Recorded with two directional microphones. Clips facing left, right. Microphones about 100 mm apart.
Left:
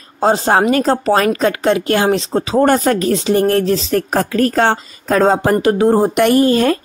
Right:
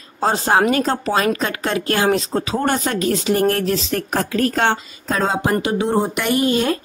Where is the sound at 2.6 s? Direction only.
45° left (ahead or behind).